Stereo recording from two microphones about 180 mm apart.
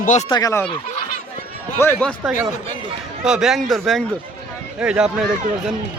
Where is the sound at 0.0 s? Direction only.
45° left (ahead or behind).